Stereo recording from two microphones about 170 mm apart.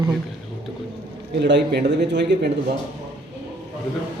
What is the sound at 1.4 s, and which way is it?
A man's voice, 80° right.